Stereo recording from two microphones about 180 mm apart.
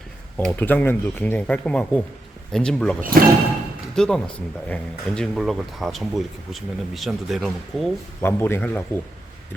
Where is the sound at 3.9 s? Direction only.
5° left (ahead or behind).